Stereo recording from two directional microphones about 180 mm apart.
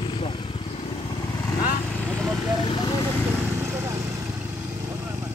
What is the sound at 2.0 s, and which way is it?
Vehicle, 5° left (ahead or behind).